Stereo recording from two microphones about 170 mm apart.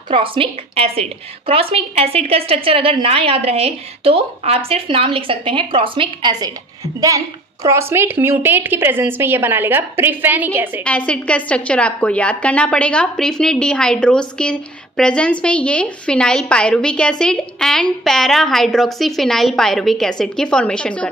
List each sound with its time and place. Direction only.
0.1 s a woman's voice: 30° right (ahead or behind)
7.6 s a woman's voice: 15° right (ahead or behind)
10.8 s a woman's voice: 5° left (ahead or behind)